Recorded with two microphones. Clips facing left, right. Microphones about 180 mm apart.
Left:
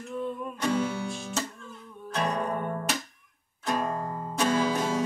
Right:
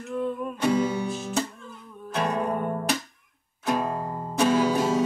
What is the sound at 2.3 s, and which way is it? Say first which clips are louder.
Music: right 3 dB; 5° right (ahead or behind).